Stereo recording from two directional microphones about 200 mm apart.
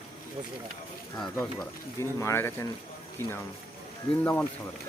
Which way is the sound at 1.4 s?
15° left (ahead or behind).